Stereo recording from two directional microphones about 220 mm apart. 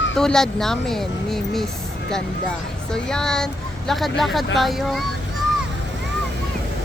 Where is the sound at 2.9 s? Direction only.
5° left (ahead or behind).